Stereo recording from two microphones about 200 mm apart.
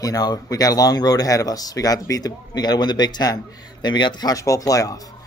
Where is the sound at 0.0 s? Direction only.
20° left (ahead or behind).